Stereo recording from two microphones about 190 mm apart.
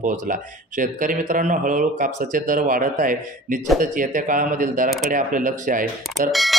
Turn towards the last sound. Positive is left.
turn(degrees=0)  # may be behind; listen again after turning